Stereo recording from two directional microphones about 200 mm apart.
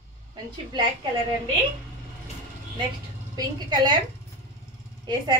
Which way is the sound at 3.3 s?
20° right (ahead or behind).